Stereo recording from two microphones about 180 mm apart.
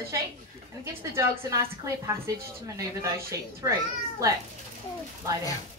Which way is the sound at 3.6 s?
15° right (ahead or behind).